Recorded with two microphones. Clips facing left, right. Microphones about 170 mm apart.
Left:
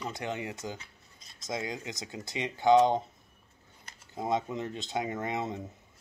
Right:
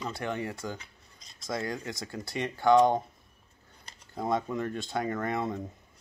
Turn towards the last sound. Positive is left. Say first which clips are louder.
# right 2 dB
turn(degrees=20)  # may be behind; listen again after turning